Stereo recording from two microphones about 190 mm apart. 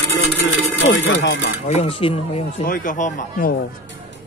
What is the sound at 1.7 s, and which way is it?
Speech, 35° left (ahead or behind).